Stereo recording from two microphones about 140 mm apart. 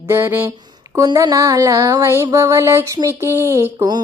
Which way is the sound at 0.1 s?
15° right (ahead or behind).